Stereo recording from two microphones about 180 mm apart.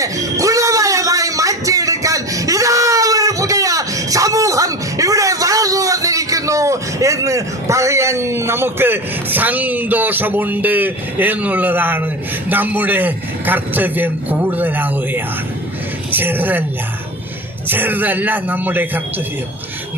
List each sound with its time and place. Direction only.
0.0 s music: 20° right (ahead or behind)
12.5 s a man's voice: 10° right (ahead or behind)
17.7 s a man's voice: 10° right (ahead or behind)